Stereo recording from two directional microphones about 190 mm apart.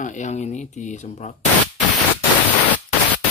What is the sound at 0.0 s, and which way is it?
Speech, 40° left (ahead or behind).